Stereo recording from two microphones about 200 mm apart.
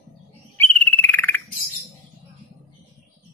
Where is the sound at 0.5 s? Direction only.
10° left (ahead or behind).